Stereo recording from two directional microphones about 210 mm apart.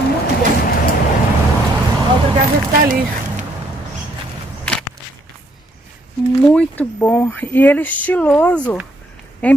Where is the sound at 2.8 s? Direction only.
40° right (ahead or behind).